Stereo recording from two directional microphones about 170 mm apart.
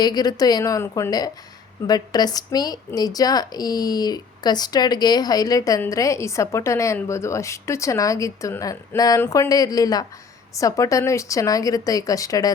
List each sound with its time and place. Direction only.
0.0 s speech: 25° left (ahead or behind)